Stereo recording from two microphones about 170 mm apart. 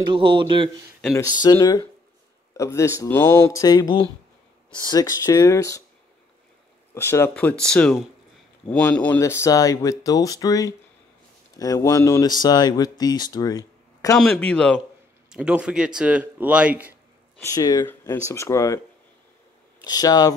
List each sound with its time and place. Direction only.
0.1 s speech: 30° right (ahead or behind)
1.4 s speech: 25° left (ahead or behind)
6.9 s speech: 15° left (ahead or behind)
14.1 s speech: 5° left (ahead or behind)
15.2 s speech: 5° right (ahead or behind)
17.4 s speech: 20° left (ahead or behind)
19.8 s speech: 20° left (ahead or behind)